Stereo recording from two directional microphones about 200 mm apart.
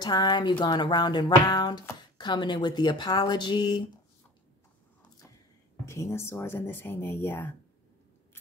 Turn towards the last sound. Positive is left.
turn(degrees=10)  # may be behind; listen again after turning